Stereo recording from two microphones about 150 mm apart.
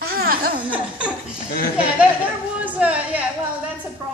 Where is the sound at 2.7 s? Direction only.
10° right (ahead or behind).